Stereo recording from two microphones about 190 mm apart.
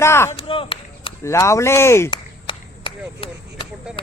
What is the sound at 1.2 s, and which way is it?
Speech, 15° left (ahead or behind).